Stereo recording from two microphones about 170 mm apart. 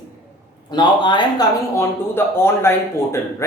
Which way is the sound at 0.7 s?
25° left (ahead or behind).